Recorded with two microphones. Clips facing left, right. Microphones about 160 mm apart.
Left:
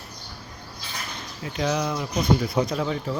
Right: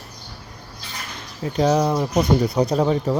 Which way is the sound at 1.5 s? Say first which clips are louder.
Right 7 dB; 35° right (ahead or behind).